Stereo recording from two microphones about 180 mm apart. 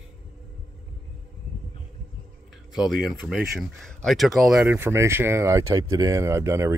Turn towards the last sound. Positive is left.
turn(degrees=-15)  # may be behind; listen again after turning